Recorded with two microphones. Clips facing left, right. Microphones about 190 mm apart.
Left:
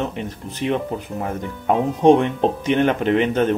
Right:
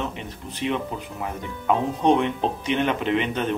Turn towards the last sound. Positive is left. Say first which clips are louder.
# left 6 dB
turn(degrees=45)  # may be behind; listen again after turning